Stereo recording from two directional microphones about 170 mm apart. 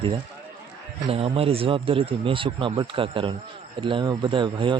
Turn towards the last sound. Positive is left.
turn(degrees=-30)  # may be behind; listen again after turning